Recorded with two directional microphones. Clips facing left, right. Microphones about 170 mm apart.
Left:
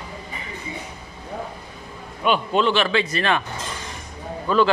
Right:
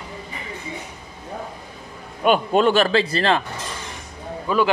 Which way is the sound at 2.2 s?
45° right (ahead or behind).